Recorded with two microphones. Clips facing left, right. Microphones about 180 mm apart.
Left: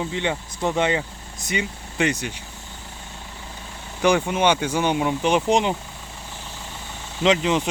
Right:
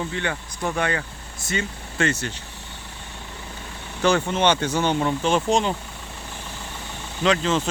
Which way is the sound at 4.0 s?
15° left (ahead or behind).